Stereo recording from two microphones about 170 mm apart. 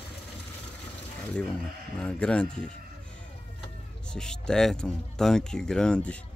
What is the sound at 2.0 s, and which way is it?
Speech, 5° left (ahead or behind).